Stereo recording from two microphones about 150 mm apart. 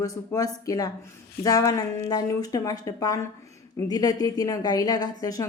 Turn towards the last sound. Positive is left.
turn(degrees=25)  # may be behind; listen again after turning